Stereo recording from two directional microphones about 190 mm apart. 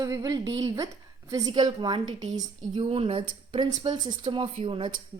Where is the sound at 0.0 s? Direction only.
20° right (ahead or behind).